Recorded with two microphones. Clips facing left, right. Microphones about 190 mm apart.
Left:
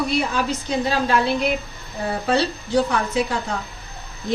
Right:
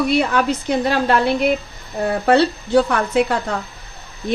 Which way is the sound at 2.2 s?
60° right (ahead or behind).